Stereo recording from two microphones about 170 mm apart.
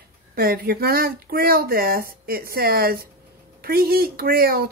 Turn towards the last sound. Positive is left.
turn(degrees=-60)  # may be behind; listen again after turning